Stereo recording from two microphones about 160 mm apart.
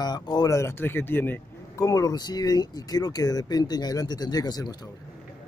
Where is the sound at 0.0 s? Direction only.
25° left (ahead or behind).